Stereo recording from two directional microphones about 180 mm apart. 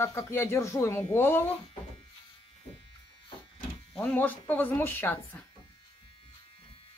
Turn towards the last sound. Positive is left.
turn(degrees=10)  # may be behind; listen again after turning